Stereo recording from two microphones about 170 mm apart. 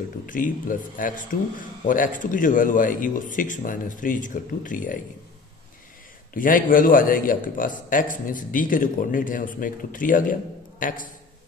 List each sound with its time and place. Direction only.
0.3 s a man's voice: 50° left (ahead or behind)
6.3 s a man's voice: 55° left (ahead or behind)